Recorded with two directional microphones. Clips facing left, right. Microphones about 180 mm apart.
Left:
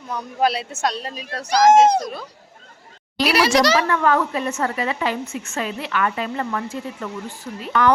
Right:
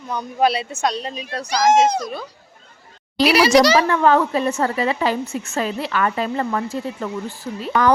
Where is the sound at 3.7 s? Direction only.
30° right (ahead or behind).